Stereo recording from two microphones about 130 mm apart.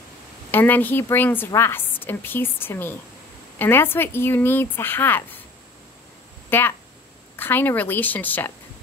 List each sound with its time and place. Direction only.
0.5 s a woman's voice: 15° left (ahead or behind)
6.5 s a woman's voice: 15° left (ahead or behind)